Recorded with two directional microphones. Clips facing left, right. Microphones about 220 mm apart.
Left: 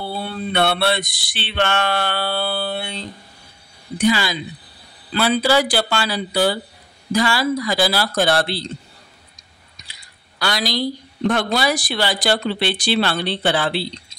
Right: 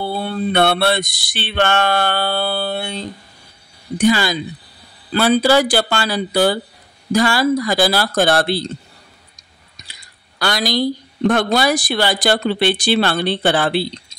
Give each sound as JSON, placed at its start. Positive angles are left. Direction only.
{"t": 0.0, "sound": "a woman's voice", "side_deg": -50}
{"t": 10.4, "sound": "a woman's voice", "side_deg": -50}